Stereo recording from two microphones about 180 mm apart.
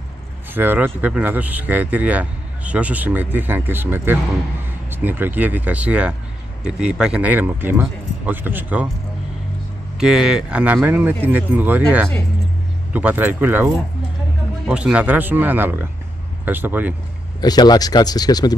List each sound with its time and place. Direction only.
0.6 s speech: 10° right (ahead or behind)
9.9 s speech: 5° right (ahead or behind)
17.4 s speech: 20° left (ahead or behind)